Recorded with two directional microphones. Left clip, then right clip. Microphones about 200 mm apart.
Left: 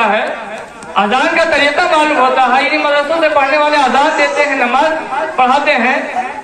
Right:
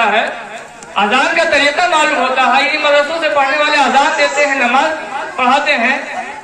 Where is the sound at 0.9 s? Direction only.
25° left (ahead or behind).